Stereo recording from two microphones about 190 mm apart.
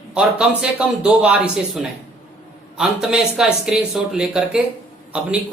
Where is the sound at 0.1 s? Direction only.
5° right (ahead or behind).